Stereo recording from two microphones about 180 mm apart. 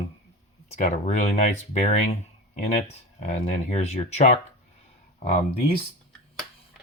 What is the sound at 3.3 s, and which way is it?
Speech, 40° left (ahead or behind).